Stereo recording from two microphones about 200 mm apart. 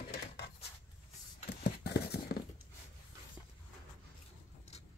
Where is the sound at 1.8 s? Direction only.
55° left (ahead or behind).